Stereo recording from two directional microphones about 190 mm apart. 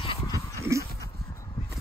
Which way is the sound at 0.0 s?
25° left (ahead or behind).